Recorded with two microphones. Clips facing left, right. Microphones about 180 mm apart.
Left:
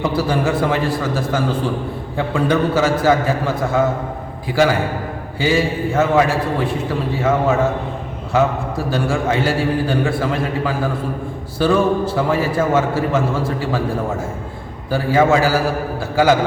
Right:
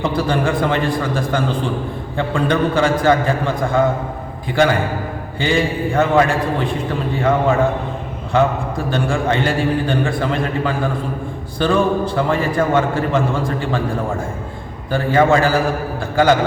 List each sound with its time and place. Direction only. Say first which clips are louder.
0.0 s a man's voice: even; 5° left (ahead or behind)